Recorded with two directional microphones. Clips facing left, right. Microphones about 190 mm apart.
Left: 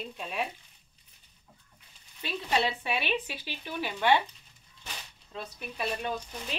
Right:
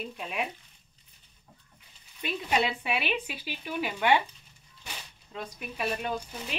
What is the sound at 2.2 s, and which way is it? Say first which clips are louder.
Speech: right 1 dB; 15° right (ahead or behind).